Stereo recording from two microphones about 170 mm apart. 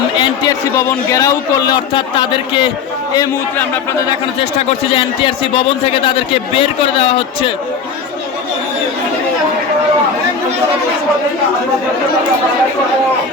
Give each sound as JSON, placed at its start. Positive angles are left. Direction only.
{"t": 0.2, "sound": "a man's voice", "side_deg": 20}
{"t": 4.9, "sound": "a man's voice", "side_deg": 30}